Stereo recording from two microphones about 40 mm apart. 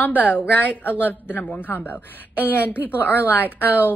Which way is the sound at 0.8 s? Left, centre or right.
Left.